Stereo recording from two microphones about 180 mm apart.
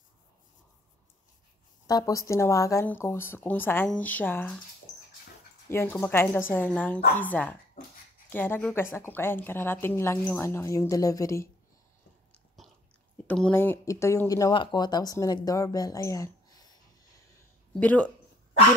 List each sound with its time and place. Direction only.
1.9 s a woman's voice: 20° left (ahead or behind)
5.7 s a woman's voice: 15° left (ahead or behind)
7.8 s dog: 50° left (ahead or behind)
8.3 s a woman's voice: 10° left (ahead or behind)
12.6 s biting: centre (ahead or behind)
13.3 s speech: 10° left (ahead or behind)
17.7 s a woman's voice: 10° left (ahead or behind)